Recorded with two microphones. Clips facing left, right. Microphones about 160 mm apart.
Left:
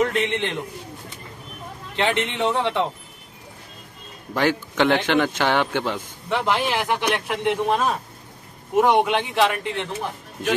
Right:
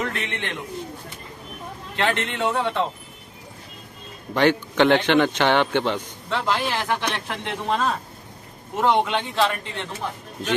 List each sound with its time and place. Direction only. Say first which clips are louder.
0.0 s a man's voice: left 7 dB; 20° left (ahead or behind)
2.0 s speech: left 2 dB; 20° left (ahead or behind)
4.3 s speech: right 2 dB; 10° left (ahead or behind)